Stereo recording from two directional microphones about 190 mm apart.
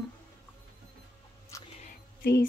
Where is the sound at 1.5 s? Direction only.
15° left (ahead or behind).